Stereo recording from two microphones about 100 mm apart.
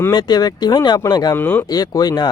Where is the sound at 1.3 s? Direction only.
20° left (ahead or behind).